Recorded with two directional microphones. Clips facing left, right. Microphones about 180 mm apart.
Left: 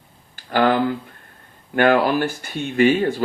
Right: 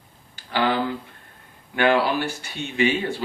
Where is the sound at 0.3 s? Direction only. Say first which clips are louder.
Left 5 dB; 50° left (ahead or behind).